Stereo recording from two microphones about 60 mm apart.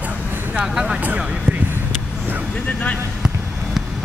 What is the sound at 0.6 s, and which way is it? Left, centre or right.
Speech, centre.